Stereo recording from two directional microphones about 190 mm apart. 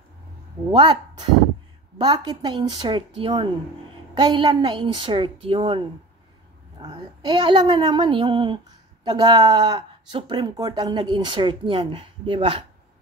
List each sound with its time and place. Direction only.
0.7 s speech: 25° right (ahead or behind)
6.9 s speech: 25° right (ahead or behind)